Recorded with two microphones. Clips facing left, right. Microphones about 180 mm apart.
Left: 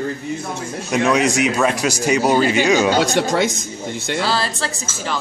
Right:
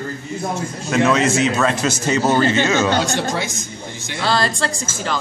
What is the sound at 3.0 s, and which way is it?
Speech, 65° left (ahead or behind).